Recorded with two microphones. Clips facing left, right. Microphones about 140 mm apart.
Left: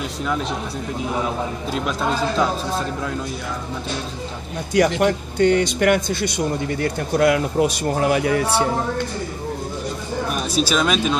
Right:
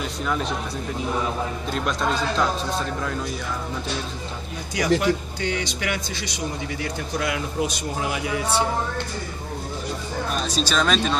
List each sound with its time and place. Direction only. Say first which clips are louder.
0.2 s a man's voice: left 2 dB; centre (ahead or behind)
1.7 s a man's voice: left 2 dB; 5° left (ahead or behind)
4.7 s speech: left 4 dB; 55° left (ahead or behind)
10.3 s speech: left 3 dB; 10° left (ahead or behind)